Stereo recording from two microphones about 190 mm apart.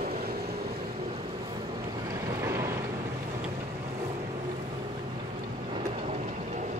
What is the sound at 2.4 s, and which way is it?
Boat, 15° right (ahead or behind).